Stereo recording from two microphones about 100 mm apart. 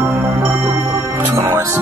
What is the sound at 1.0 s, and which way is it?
Speech, 30° right (ahead or behind).